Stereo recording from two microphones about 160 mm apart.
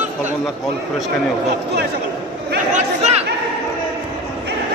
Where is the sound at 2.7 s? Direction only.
45° right (ahead or behind).